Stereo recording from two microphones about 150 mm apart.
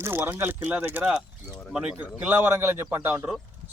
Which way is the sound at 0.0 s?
15° right (ahead or behind).